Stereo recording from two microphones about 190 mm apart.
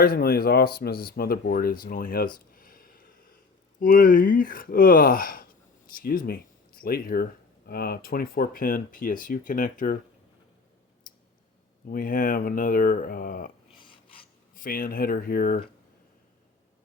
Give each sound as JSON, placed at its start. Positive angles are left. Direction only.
{"t": 0.0, "sound": "speech", "side_deg": 50}
{"t": 2.5, "sound": "a sound", "side_deg": 50}
{"t": 3.8, "sound": "speech", "side_deg": 45}
{"t": 11.1, "sound": "clicking", "side_deg": 45}
{"t": 11.9, "sound": "speech", "side_deg": 45}
{"t": 13.7, "sound": "filing", "side_deg": 25}
{"t": 14.5, "sound": "speech", "side_deg": 50}